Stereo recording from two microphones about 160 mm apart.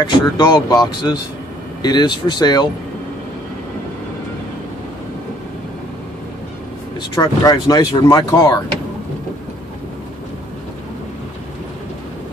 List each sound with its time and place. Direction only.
0.0 s speech: 25° left (ahead or behind)
7.0 s speech: 25° left (ahead or behind)